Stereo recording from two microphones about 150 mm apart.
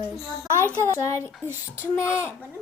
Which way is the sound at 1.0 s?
20° left (ahead or behind).